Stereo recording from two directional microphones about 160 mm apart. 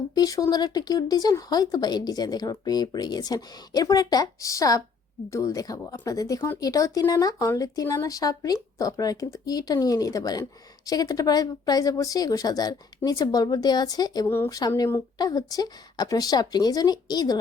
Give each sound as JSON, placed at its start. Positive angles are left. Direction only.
{"t": 0.1, "sound": "speech", "side_deg": 25}